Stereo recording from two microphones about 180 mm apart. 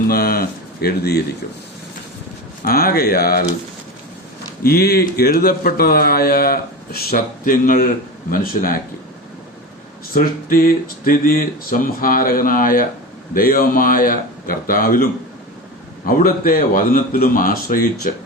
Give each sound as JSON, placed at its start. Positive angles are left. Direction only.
{"t": 0.1, "sound": "speech", "side_deg": 55}
{"t": 2.6, "sound": "speech", "side_deg": 55}
{"t": 4.6, "sound": "speech", "side_deg": 55}
{"t": 10.2, "sound": "speech", "side_deg": 55}
{"t": 16.0, "sound": "speech", "side_deg": 50}